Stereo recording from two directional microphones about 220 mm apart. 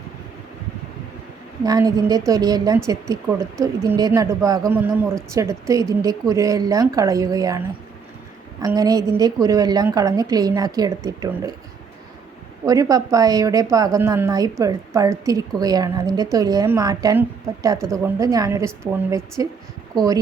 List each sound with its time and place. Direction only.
1.6 s speech: 15° right (ahead or behind)
8.6 s speech: 15° right (ahead or behind)
12.6 s speech: 15° right (ahead or behind)